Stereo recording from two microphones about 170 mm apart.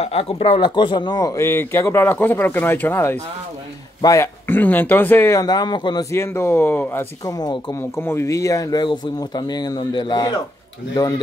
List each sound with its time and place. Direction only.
0.0 s speech: 35° left (ahead or behind)